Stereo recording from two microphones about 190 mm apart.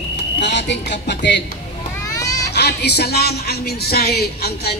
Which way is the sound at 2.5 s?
60° left (ahead or behind).